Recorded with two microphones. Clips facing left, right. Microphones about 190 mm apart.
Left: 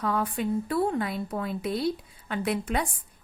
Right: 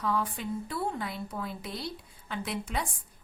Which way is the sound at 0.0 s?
60° left (ahead or behind).